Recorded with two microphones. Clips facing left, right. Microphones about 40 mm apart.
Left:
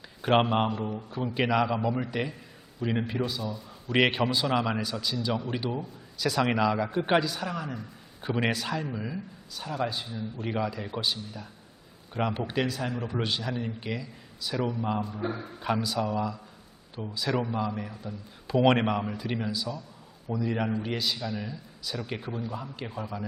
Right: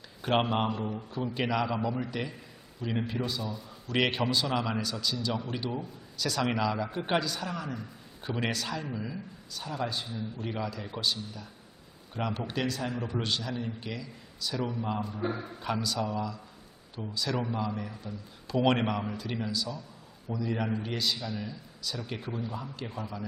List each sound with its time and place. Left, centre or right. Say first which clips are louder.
0.2 s a man's voice: left 4 dB; centre
3.8 s a man's voice: left 4 dB; centre
15.6 s a man's voice: left 3 dB; centre